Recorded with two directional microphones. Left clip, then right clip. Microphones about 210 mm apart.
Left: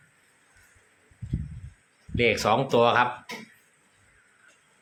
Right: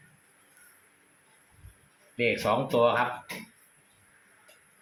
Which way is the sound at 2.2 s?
40° left (ahead or behind).